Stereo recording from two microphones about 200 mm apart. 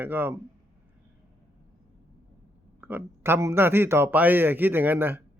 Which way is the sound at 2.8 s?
10° right (ahead or behind).